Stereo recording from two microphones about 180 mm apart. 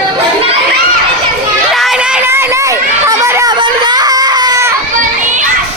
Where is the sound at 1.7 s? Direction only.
Centre (ahead or behind); by 4.7 s 20° right (ahead or behind).